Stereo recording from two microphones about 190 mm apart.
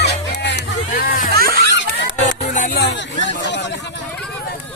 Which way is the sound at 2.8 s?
70° left (ahead or behind).